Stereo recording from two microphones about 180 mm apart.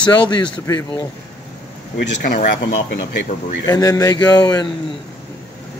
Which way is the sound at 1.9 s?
55° left (ahead or behind).